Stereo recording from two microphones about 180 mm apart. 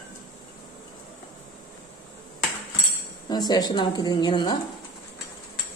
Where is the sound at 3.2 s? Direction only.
20° left (ahead or behind).